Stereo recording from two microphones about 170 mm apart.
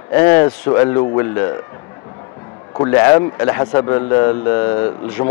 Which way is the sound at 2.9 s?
15° left (ahead or behind).